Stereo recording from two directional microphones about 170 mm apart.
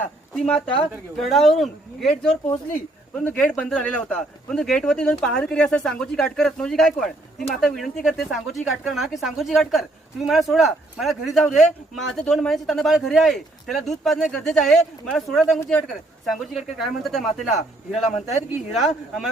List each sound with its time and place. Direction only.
0.0 s speech: 5° left (ahead or behind)
3.2 s speech: 5° left (ahead or behind)
17.5 s speech: 40° left (ahead or behind)
18.7 s speech: centre (ahead or behind)